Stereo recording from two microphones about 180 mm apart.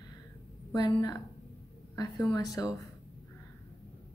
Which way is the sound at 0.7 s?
20° left (ahead or behind).